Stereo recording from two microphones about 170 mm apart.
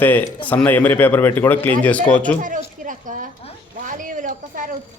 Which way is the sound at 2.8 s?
50° right (ahead or behind).